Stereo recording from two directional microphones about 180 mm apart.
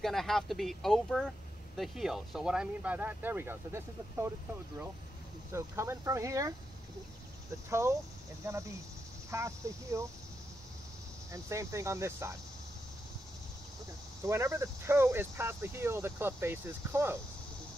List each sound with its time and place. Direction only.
0.0 s speech: centre (ahead or behind)
5.5 s speech: 15° right (ahead or behind)
8.4 s speech: 15° right (ahead or behind)
11.3 s speech: 15° right (ahead or behind)
14.2 s speech: 15° right (ahead or behind)